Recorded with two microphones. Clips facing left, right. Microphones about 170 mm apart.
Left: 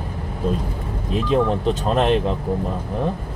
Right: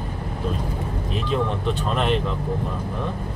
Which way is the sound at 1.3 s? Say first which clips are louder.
Left 5 dB; 40° left (ahead or behind).